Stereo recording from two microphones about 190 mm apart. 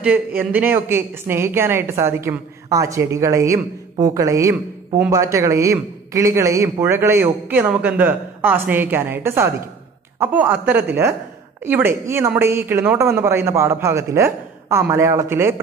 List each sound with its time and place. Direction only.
0.4 s a man's voice: 10° right (ahead or behind)